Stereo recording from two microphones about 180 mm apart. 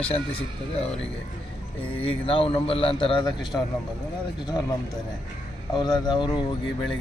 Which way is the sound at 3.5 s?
10° left (ahead or behind).